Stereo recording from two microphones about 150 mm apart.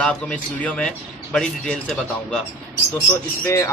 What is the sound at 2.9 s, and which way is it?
Speech, 15° left (ahead or behind).